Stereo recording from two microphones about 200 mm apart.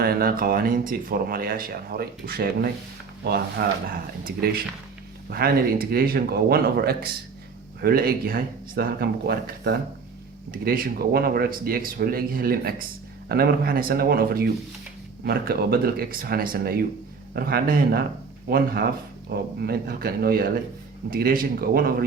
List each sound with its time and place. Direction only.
0.0 s speech: 50° right (ahead or behind)